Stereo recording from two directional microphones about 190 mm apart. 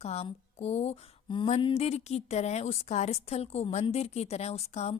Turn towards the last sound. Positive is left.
turn(degrees=35)  # may be behind; listen again after turning